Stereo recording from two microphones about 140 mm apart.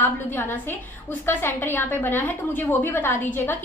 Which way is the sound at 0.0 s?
15° left (ahead or behind).